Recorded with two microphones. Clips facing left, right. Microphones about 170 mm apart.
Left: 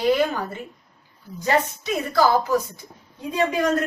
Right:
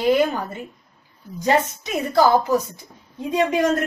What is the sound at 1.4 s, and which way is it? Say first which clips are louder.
A woman's voice: right 2 dB; 20° right (ahead or behind).